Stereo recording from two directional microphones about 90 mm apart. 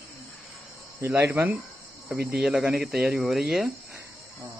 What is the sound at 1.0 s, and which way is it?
Speech, 20° right (ahead or behind).